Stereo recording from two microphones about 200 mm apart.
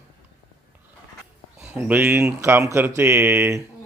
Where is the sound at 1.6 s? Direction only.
5° right (ahead or behind).